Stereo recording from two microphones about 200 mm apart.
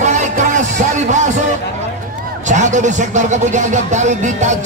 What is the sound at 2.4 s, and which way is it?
Speech, 35° right (ahead or behind).